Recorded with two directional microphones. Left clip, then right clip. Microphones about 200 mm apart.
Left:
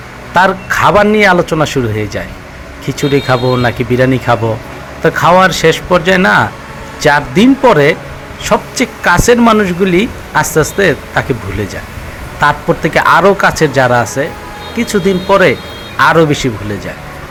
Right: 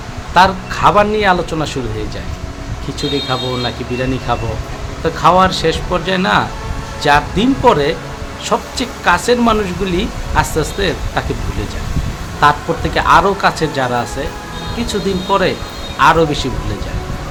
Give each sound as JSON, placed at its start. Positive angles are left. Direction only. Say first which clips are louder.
{"t": 0.3, "sound": "speech", "louder": "left 2 dB", "side_deg": 30}
{"t": 12.4, "sound": "speech", "louder": "left 2 dB", "side_deg": 30}